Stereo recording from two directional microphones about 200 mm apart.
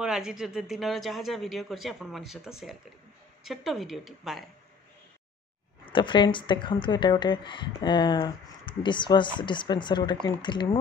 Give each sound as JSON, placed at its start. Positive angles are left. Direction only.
{"t": 0.0, "sound": "speech", "side_deg": -5}
{"t": 5.9, "sound": "speech", "side_deg": 25}